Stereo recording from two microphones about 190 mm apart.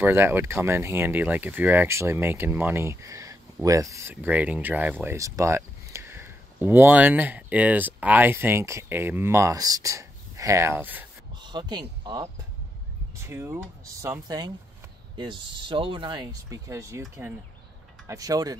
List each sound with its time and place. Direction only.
0.0 s speech: 10° right (ahead or behind)
11.3 s speech: 25° right (ahead or behind)
18.0 s speech: 20° right (ahead or behind)